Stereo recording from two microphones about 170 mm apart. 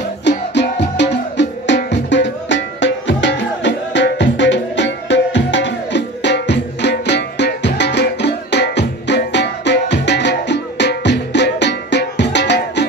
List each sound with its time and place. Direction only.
0.3 s music: 90° left